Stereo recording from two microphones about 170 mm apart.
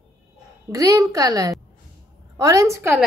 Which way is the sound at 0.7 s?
20° right (ahead or behind).